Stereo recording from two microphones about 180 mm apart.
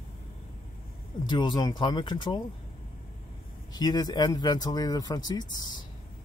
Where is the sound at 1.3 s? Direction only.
25° left (ahead or behind).